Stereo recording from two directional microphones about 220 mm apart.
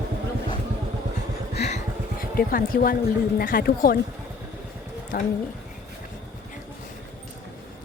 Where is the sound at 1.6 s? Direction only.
35° left (ahead or behind).